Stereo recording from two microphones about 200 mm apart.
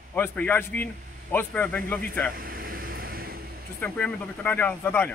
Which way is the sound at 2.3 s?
45° right (ahead or behind).